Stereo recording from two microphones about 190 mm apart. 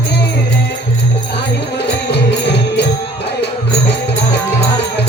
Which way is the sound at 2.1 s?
60° left (ahead or behind).